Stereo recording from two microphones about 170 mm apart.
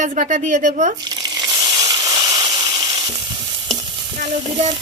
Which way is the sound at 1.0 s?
25° right (ahead or behind).